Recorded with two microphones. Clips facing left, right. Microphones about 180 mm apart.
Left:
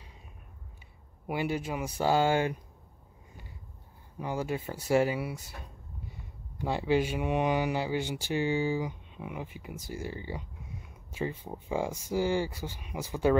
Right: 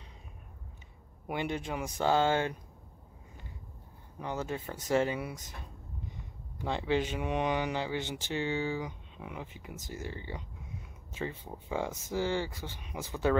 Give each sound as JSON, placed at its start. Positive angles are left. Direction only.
{"t": 1.2, "sound": "speech", "side_deg": 5}
{"t": 4.2, "sound": "speech", "side_deg": 10}
{"t": 6.6, "sound": "speech", "side_deg": 10}
{"t": 11.4, "sound": "speech", "side_deg": 10}